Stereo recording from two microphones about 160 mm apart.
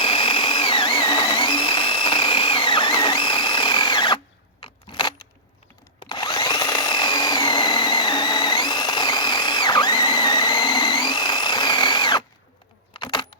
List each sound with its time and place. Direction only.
0.0 s blender: 30° left (ahead or behind)
4.6 s a sound: 30° left (ahead or behind)
6.0 s power tool: 25° left (ahead or behind)
12.9 s keys jangling: 30° left (ahead or behind)